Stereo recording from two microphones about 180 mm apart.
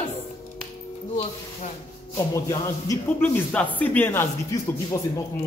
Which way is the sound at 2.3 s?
20° left (ahead or behind).